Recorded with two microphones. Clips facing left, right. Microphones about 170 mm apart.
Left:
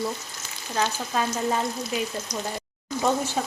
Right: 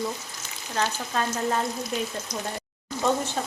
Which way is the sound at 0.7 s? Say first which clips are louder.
Left 1 dB; 5° left (ahead or behind).